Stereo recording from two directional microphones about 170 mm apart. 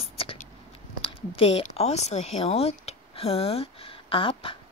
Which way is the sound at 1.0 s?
35° left (ahead or behind).